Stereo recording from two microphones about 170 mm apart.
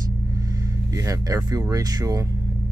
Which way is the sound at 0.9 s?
20° right (ahead or behind).